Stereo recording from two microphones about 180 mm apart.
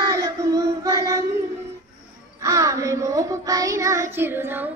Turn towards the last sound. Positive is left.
turn(degrees=-10)  # may be behind; listen again after turning